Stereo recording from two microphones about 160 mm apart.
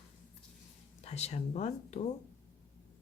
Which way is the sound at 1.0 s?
40° left (ahead or behind).